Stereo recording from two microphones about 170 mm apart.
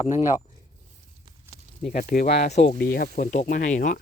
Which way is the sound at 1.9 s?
55° left (ahead or behind).